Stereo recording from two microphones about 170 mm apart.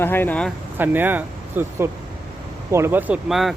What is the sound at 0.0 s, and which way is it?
Speech, 10° left (ahead or behind).